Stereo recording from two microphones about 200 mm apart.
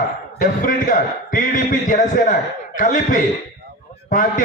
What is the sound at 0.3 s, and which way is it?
A man's voice, 40° left (ahead or behind).